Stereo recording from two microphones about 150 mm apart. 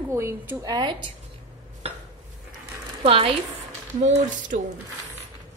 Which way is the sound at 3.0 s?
40° right (ahead or behind).